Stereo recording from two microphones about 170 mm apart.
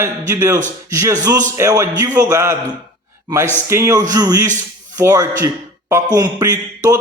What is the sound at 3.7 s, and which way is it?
A man's voice, 20° right (ahead or behind).